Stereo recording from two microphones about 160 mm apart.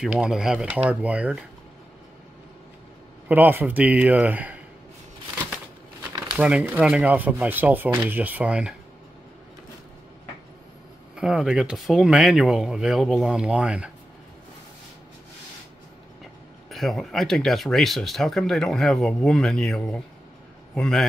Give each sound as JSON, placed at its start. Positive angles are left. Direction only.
{"t": 0.0, "sound": "speech", "side_deg": -5}
{"t": 3.3, "sound": "speech", "side_deg": -10}
{"t": 6.3, "sound": "speech", "side_deg": -10}
{"t": 11.1, "sound": "speech", "side_deg": -5}
{"t": 16.7, "sound": "a man's voice", "side_deg": 0}